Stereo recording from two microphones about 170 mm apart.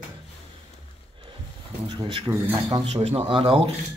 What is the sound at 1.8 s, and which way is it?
Speech, 30° right (ahead or behind).